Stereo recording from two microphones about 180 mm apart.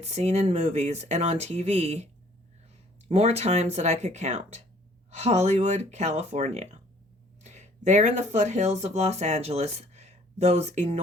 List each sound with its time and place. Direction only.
0.0 s speech: 35° right (ahead or behind)
3.1 s speech: 35° right (ahead or behind)